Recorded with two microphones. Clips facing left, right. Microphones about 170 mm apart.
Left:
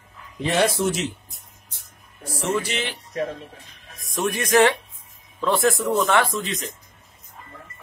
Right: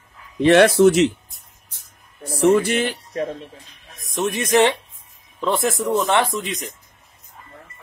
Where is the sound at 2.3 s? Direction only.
60° right (ahead or behind).